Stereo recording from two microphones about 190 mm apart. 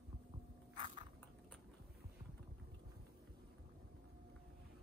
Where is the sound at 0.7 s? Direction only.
35° right (ahead or behind).